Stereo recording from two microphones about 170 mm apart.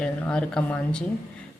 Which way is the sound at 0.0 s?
5° left (ahead or behind).